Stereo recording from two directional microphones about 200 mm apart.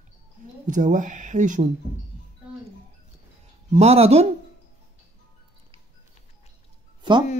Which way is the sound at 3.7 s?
30° right (ahead or behind).